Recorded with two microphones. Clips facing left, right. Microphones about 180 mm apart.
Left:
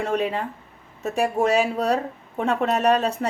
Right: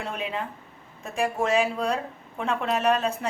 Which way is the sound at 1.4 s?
40° left (ahead or behind).